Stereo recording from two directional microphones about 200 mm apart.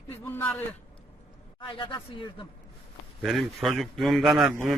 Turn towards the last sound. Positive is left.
turn(degrees=0)  # may be behind; listen again after turning